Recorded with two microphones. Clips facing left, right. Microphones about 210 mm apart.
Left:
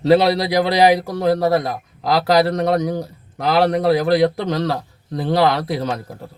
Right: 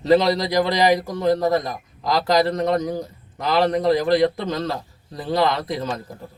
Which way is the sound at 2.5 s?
70° left (ahead or behind).